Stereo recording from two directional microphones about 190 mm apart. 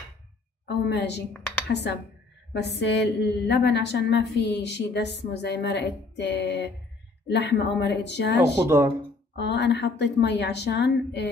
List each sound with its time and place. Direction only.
0.7 s a woman's voice: 65° left (ahead or behind)
8.6 s speech: 15° right (ahead or behind)
9.3 s a woman's voice: 65° left (ahead or behind)